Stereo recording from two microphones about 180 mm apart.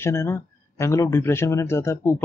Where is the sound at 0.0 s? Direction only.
15° left (ahead or behind).